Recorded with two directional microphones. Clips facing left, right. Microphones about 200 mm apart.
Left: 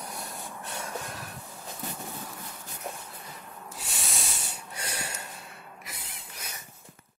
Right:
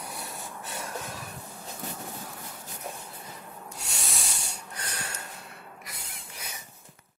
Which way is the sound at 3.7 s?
Centre (ahead or behind).